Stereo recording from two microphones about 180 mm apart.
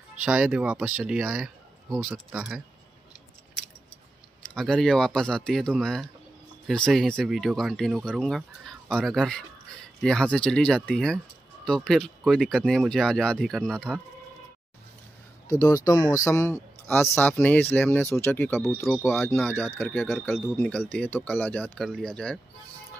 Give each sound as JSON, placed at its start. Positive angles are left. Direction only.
{"t": 0.2, "sound": "speech", "side_deg": -5}
{"t": 4.6, "sound": "speech", "side_deg": 0}
{"t": 15.4, "sound": "speech", "side_deg": 20}